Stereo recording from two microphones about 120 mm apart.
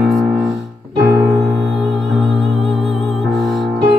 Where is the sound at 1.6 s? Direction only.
Centre (ahead or behind).